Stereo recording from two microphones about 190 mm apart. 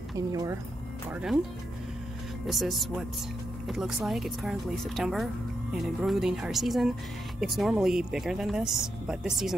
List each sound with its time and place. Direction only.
0.3 s speech: 20° right (ahead or behind)
1.1 s speech: 5° right (ahead or behind)
2.4 s speech: centre (ahead or behind)